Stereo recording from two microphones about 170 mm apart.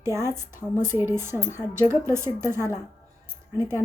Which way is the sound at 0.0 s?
15° right (ahead or behind).